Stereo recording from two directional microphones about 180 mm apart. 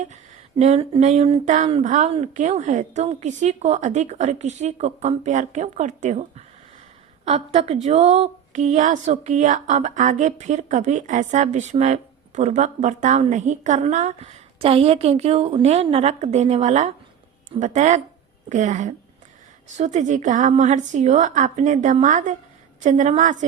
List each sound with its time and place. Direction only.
0.1 s a woman's voice: 40° right (ahead or behind)